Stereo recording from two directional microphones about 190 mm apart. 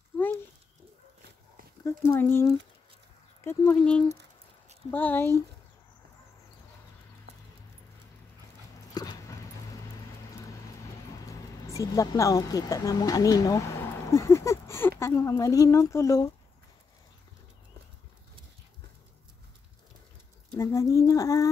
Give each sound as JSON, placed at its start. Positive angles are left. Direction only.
{"t": 0.1, "sound": "a sound", "side_deg": 10}
{"t": 1.9, "sound": "speech", "side_deg": 10}
{"t": 8.9, "sound": "dog", "side_deg": 20}
{"t": 11.7, "sound": "speech", "side_deg": 15}
{"t": 20.5, "sound": "speech", "side_deg": 15}